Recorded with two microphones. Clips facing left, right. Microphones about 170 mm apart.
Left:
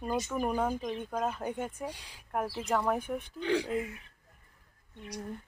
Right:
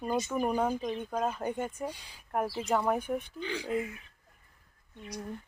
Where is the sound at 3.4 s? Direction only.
70° left (ahead or behind).